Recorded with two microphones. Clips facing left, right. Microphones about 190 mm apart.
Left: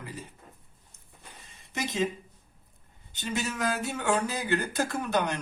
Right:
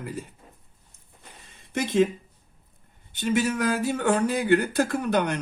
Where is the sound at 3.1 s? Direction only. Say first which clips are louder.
Right 8 dB; 55° right (ahead or behind).